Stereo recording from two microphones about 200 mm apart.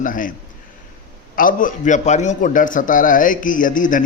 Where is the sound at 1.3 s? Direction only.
45° left (ahead or behind).